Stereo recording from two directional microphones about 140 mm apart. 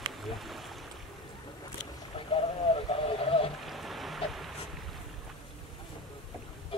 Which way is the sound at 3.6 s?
Centre (ahead or behind).